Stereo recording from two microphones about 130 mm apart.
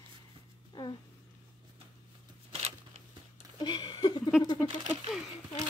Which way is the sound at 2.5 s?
50° right (ahead or behind).